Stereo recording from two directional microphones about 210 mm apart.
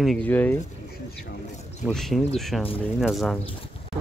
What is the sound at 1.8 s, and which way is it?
Speech, centre (ahead or behind).